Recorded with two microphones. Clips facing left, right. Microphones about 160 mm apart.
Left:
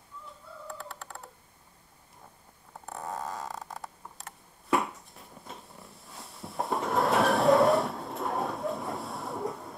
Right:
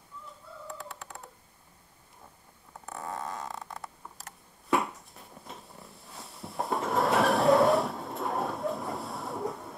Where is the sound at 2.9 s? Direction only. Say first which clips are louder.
Left 1 dB; 20° left (ahead or behind).